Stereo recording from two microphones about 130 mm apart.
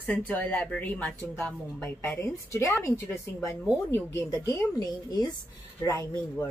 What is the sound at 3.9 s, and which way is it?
Speech, 20° left (ahead or behind).